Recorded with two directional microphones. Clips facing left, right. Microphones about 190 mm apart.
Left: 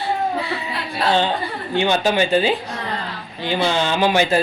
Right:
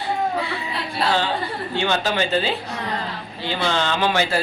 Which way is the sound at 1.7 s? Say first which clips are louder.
Left 5 dB; 15° left (ahead or behind).